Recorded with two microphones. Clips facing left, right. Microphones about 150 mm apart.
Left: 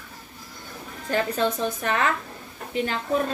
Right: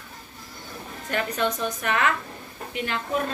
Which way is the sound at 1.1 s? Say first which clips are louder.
Left 2 dB; 30° left (ahead or behind).